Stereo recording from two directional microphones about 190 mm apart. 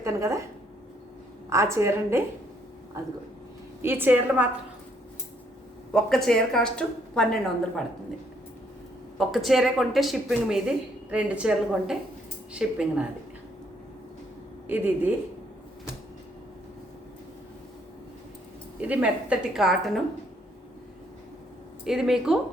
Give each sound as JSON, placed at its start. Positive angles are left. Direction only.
{"t": 0.0, "sound": "a woman's voice", "side_deg": -15}
{"t": 1.5, "sound": "a woman's voice", "side_deg": -15}
{"t": 5.9, "sound": "a woman's voice", "side_deg": 0}
{"t": 9.1, "sound": "a woman's voice", "side_deg": 0}
{"t": 14.7, "sound": "a woman's voice", "side_deg": -10}
{"t": 18.8, "sound": "a woman's voice", "side_deg": -10}
{"t": 21.8, "sound": "a woman's voice", "side_deg": 0}